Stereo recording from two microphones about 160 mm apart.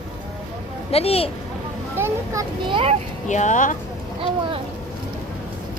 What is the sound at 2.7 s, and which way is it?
Speech, 35° right (ahead or behind).